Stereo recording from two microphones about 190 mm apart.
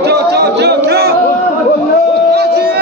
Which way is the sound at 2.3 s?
60° right (ahead or behind).